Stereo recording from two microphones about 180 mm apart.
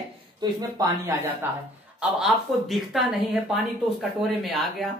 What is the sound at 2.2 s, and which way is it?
Speech, centre (ahead or behind).